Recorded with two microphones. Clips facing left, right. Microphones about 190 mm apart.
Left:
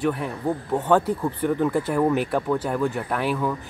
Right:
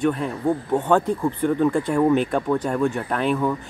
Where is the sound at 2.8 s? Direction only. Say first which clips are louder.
Right 2 dB; 10° left (ahead or behind).